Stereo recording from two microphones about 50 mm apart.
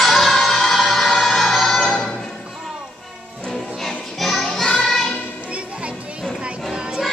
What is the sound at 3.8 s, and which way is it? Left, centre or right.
Music, centre.